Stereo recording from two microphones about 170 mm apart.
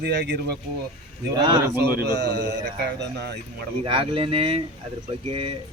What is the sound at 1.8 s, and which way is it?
Speech, 80° right.